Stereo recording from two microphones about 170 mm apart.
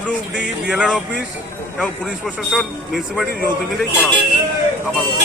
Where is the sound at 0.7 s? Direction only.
5° right (ahead or behind).